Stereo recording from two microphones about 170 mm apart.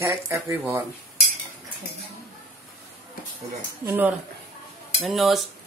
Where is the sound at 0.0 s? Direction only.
15° right (ahead or behind).